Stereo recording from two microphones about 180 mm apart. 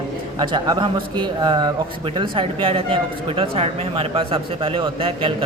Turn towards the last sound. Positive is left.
turn(degrees=-30)  # may be behind; listen again after turning